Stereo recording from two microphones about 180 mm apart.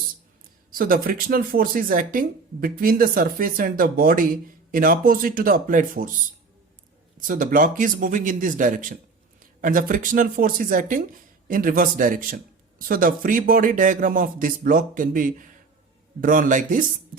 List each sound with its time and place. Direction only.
0.7 s speech: 50° right (ahead or behind)
7.2 s speech: 50° right (ahead or behind)